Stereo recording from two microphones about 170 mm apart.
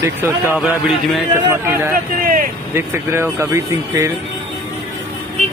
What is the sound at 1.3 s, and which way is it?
Speech, 15° right (ahead or behind).